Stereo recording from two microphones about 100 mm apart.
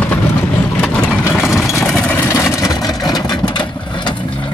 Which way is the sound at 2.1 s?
25° left (ahead or behind).